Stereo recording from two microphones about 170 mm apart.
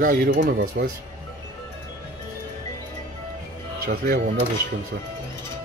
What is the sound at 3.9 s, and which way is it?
Speech, 65° right (ahead or behind).